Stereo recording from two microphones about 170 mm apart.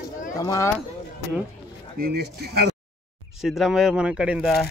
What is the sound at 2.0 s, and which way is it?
Speech, 65° right (ahead or behind).